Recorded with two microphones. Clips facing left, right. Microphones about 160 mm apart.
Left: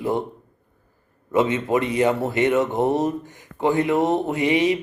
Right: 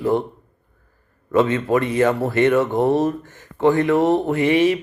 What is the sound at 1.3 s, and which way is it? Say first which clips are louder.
Speech: right 2 dB; 20° left (ahead or behind).